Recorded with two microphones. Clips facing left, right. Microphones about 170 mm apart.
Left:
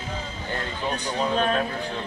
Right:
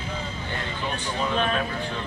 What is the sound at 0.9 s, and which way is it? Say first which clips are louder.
Speech: left 3 dB; 40° left (ahead or behind).